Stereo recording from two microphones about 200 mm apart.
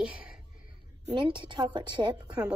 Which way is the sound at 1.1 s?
25° right (ahead or behind).